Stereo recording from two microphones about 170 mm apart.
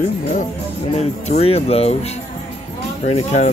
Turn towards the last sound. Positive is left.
turn(degrees=40)  # may be behind; listen again after turning